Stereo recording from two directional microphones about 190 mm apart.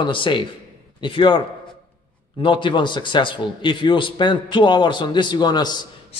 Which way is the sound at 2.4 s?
25° left (ahead or behind).